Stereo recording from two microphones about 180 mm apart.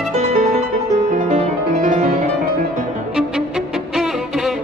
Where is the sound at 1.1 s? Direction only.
40° right (ahead or behind).